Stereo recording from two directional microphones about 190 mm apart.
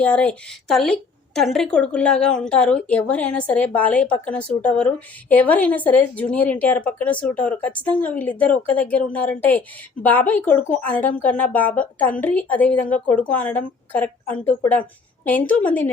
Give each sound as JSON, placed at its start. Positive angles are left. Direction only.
{"t": 0.0, "sound": "a woman's voice", "side_deg": 5}